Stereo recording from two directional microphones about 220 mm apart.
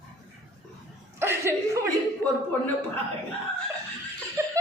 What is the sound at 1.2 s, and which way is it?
Speech, 10° right (ahead or behind).